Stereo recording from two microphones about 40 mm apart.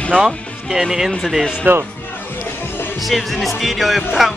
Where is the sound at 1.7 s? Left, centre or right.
Right.